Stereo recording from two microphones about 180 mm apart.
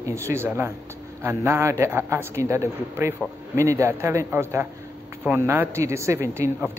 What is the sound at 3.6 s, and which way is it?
Speech, 15° right (ahead or behind).